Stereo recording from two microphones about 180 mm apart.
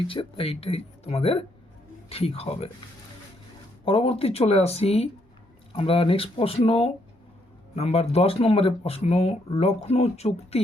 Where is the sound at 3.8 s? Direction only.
30° left (ahead or behind).